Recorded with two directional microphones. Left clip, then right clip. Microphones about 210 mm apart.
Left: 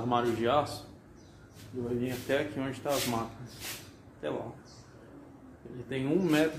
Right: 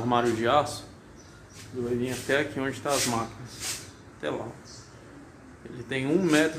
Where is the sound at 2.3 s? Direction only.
20° right (ahead or behind).